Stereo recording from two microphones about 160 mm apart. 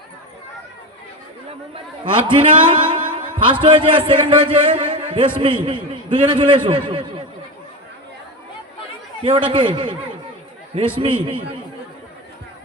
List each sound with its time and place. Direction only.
2.2 s a man's voice: 30° right (ahead or behind)
9.2 s a man's voice: 30° right (ahead or behind)
11.0 s a man's voice: 35° right (ahead or behind)